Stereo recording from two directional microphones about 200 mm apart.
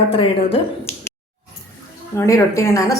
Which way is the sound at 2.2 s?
15° left (ahead or behind).